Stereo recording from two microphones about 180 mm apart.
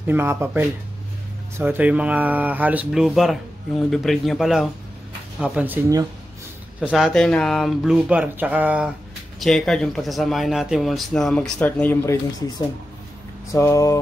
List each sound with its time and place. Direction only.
0.0 s speech: 10° right (ahead or behind)
6.8 s speech: centre (ahead or behind)
9.4 s speech: 5° left (ahead or behind)